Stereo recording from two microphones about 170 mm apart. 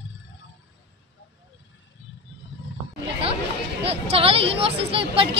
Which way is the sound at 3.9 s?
35° right (ahead or behind).